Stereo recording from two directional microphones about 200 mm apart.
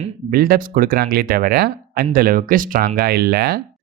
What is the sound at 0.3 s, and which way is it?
Speech, 50° right (ahead or behind).